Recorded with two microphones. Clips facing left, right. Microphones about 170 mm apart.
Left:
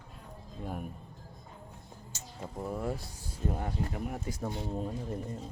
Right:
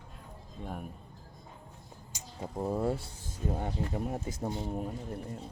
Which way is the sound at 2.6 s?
30° right (ahead or behind).